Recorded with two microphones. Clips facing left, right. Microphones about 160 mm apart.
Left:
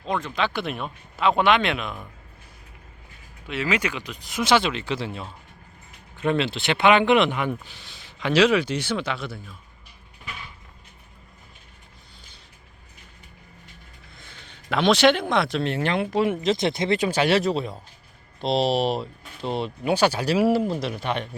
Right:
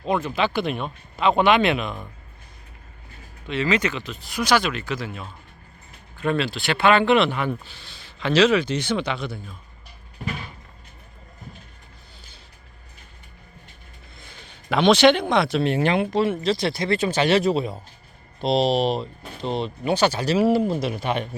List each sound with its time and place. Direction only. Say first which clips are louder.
0.0 s speech: right 3 dB; 10° right (ahead or behind)
3.4 s speech: right 3 dB; 10° left (ahead or behind)
10.2 s a sound: right 9 dB; 40° right (ahead or behind)
14.3 s speech: right 2 dB; centre (ahead or behind)
15.6 s speech: right 4 dB; 15° right (ahead or behind)
16.0 s speech: right 1 dB; 10° left (ahead or behind)